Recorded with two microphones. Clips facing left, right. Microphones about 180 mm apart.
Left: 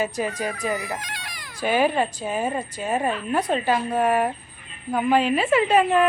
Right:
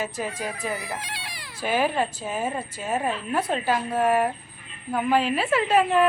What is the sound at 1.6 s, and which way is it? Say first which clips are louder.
Speech: left 3 dB; centre (ahead or behind).